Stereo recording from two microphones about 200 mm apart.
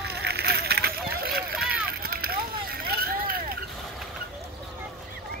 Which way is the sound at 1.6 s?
50° right (ahead or behind).